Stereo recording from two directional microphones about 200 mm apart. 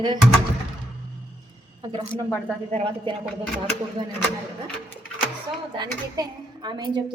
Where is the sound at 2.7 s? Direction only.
30° right (ahead or behind).